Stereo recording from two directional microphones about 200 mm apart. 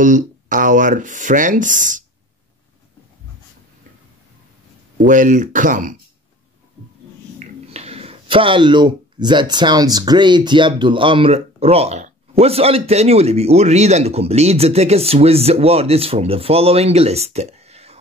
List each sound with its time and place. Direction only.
0.0 s speech: 40° right (ahead or behind)
5.0 s speech: 40° right (ahead or behind)
7.3 s speech: 30° right (ahead or behind)